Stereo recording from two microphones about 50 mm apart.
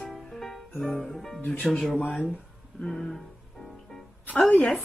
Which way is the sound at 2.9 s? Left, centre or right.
Centre.